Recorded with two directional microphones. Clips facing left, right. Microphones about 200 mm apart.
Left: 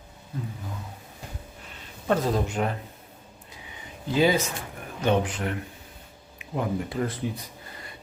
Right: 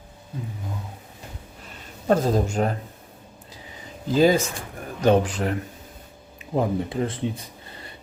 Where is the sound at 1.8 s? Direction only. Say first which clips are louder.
Right 4 dB; 40° right (ahead or behind).